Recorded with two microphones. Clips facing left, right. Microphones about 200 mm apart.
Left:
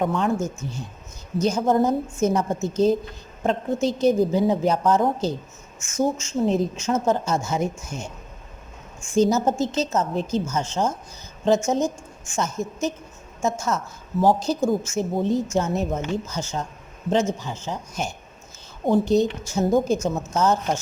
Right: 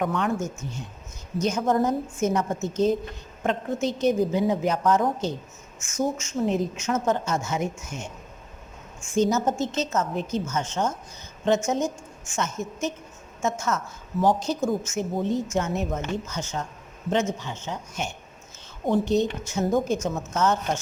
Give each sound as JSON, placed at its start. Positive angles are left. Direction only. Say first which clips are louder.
{"t": 0.0, "sound": "a woman's voice", "louder": "left 3 dB", "side_deg": 30}
{"t": 9.1, "sound": "a woman's voice", "louder": "left 3 dB", "side_deg": 35}